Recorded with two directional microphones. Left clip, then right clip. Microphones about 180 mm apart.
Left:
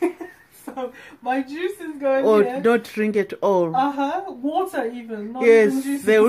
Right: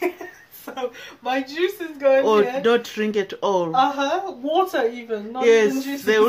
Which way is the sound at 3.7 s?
25° right (ahead or behind).